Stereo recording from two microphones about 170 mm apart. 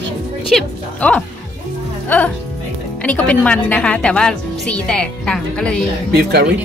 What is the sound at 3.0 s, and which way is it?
A woman's voice, 10° left (ahead or behind).